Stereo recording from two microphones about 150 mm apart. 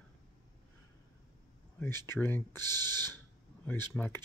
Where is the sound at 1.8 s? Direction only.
10° left (ahead or behind).